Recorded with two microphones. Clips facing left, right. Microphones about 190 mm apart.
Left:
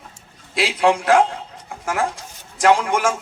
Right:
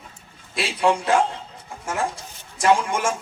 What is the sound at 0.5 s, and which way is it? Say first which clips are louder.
Speech: left 3 dB; 80° left.